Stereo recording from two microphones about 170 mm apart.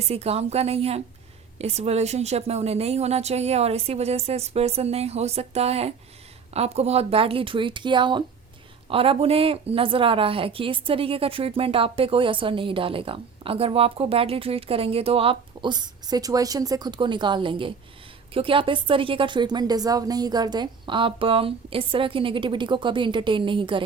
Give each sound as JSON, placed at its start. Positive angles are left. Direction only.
{"t": 0.0, "sound": "a woman's voice", "side_deg": -35}